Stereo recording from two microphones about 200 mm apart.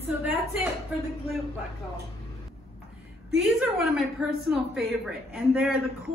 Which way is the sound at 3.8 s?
5° right (ahead or behind).